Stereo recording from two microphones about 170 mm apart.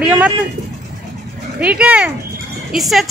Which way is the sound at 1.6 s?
5° right (ahead or behind).